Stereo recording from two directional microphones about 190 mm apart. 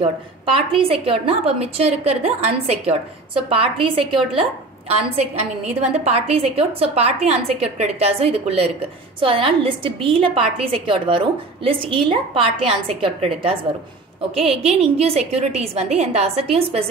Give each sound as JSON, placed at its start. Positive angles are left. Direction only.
{"t": 0.0, "sound": "a woman's voice", "side_deg": -30}